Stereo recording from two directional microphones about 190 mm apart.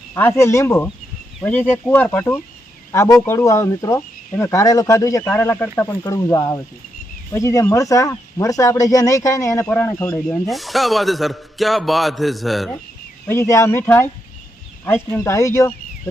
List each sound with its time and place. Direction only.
0.1 s speech: 10° left (ahead or behind)
13.2 s speech: 15° left (ahead or behind)